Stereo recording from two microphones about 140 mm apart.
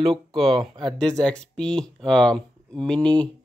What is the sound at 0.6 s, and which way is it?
Speech, 35° right (ahead or behind).